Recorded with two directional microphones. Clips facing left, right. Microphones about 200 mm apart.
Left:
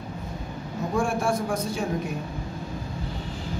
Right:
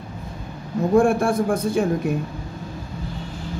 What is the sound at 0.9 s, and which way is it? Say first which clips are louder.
Speech: right 8 dB; 55° right (ahead or behind).